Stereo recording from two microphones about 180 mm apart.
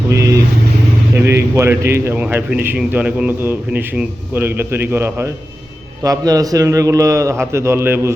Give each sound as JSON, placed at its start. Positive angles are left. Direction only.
{"t": 1.2, "sound": "a man's voice", "side_deg": -15}